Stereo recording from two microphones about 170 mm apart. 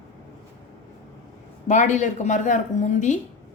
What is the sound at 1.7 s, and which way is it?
Speech, 45° left (ahead or behind).